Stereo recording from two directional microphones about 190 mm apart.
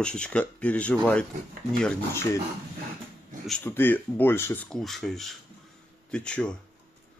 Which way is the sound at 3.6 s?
10° left (ahead or behind).